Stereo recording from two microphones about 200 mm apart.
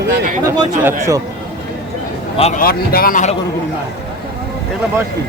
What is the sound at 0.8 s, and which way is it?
Speech, 15° right (ahead or behind).